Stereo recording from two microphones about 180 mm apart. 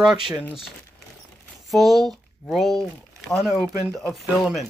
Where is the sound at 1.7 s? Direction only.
Centre (ahead or behind).